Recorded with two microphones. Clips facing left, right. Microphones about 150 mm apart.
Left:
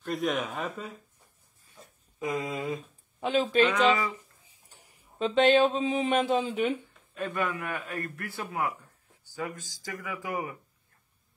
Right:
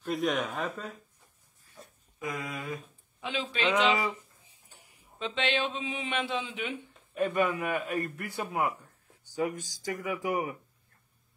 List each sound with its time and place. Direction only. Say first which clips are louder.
0.0 s speech: even; centre (ahead or behind)
2.4 s speech: left 5 dB; 25° left (ahead or behind)
3.2 s speech: left 9 dB; 45° left (ahead or behind)
7.2 s a man's voice: right 4 dB; 20° right (ahead or behind)